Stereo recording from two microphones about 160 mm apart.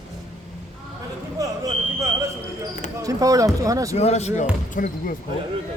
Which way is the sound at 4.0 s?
45° left (ahead or behind).